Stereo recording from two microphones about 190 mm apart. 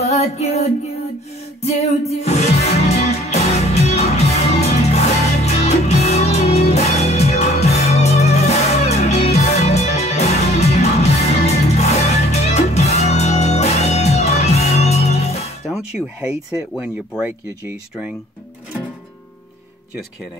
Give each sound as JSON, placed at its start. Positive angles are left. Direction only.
{"t": 0.0, "sound": "music", "side_deg": 35}
{"t": 15.7, "sound": "speech", "side_deg": -5}